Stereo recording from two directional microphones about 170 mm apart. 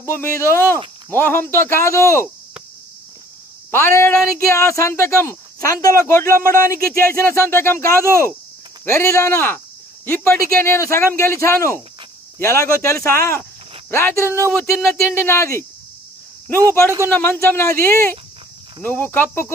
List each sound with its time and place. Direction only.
0.0 s speech: 15° left (ahead or behind)
3.7 s speech: 15° left (ahead or behind)
6.2 s speech: 55° right (ahead or behind)
7.2 s speech: 15° left (ahead or behind)
8.0 s speech: 15° right (ahead or behind)
8.8 s speech: 15° left (ahead or behind)
14.5 s speech: 5° left (ahead or behind)
15.1 s speech: 15° left (ahead or behind)
17.1 s speech: 15° left (ahead or behind)